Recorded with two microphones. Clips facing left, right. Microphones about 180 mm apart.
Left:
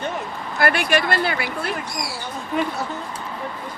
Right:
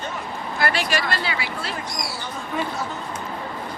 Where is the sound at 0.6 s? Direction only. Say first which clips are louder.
Left 4 dB; 55° left (ahead or behind).